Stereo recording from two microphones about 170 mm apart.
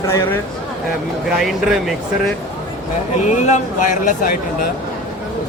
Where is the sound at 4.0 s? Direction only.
50° left (ahead or behind).